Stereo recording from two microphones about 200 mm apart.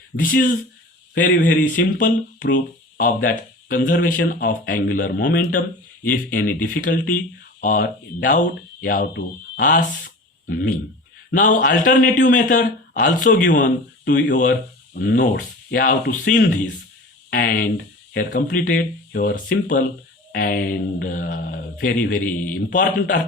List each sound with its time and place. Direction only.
0.2 s a man's voice: 45° left (ahead or behind)
11.3 s a man's voice: 40° left (ahead or behind)